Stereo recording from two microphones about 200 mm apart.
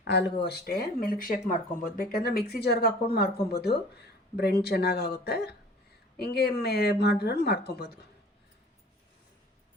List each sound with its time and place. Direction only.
0.0 s speech: 55° left (ahead or behind)